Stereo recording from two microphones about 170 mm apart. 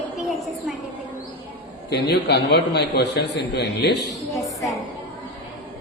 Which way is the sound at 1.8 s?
75° left (ahead or behind).